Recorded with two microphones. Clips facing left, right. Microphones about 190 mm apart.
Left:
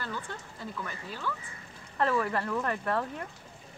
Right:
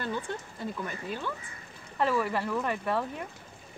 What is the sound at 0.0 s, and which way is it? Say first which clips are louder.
Speech: right 5 dB; 20° right (ahead or behind).